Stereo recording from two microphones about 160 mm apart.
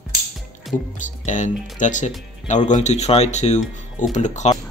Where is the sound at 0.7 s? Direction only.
Centre (ahead or behind).